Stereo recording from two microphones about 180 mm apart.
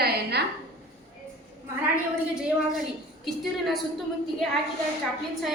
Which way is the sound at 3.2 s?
Centre (ahead or behind).